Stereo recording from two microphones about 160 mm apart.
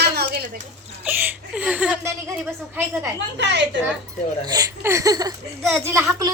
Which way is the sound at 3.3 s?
90° right.